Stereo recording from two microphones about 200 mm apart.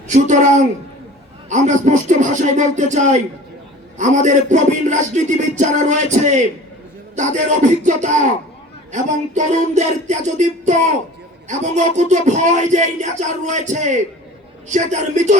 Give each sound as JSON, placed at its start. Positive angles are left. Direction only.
{"t": 0.1, "sound": "speech", "side_deg": -40}
{"t": 1.5, "sound": "speech", "side_deg": -35}